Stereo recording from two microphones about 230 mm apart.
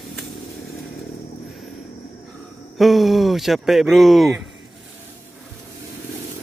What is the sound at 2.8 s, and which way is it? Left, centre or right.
A man's voice, centre.